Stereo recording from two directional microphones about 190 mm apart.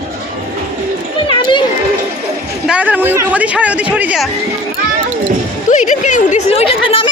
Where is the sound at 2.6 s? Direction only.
5° right (ahead or behind).